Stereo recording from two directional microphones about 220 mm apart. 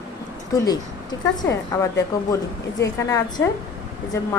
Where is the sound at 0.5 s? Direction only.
20° left (ahead or behind).